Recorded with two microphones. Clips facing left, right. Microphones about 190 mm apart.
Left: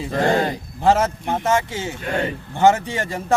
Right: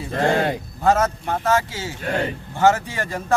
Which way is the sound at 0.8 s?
25° left (ahead or behind).